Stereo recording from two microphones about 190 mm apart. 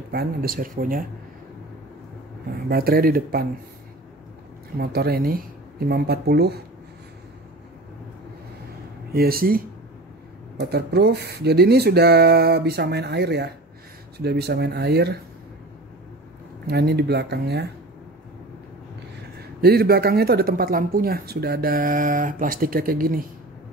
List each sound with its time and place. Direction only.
0.1 s speech: 55° right (ahead or behind)
2.7 s speech: 55° right (ahead or behind)
4.7 s speech: 55° right (ahead or behind)
9.1 s speech: 55° right (ahead or behind)
16.6 s speech: 60° right (ahead or behind)
19.6 s speech: 55° right (ahead or behind)